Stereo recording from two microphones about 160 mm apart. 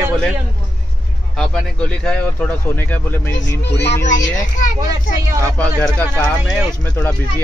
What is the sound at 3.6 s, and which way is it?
Music, 90° left.